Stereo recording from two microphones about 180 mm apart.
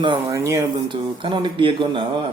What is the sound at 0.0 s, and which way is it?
Speech, 20° right (ahead or behind).